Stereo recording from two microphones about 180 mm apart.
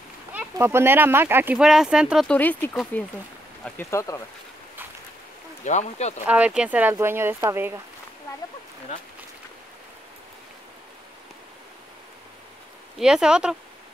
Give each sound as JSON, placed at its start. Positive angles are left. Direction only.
{"t": 0.3, "sound": "speech", "side_deg": -10}
{"t": 5.7, "sound": "speech", "side_deg": 40}
{"t": 6.2, "sound": "speech", "side_deg": -10}
{"t": 13.0, "sound": "speech", "side_deg": -5}